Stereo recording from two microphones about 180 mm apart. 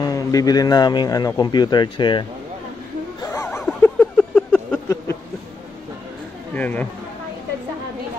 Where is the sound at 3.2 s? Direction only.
15° left (ahead or behind).